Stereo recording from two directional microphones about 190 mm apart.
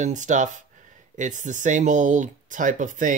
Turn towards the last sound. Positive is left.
turn(degrees=-40)  # may be behind; listen again after turning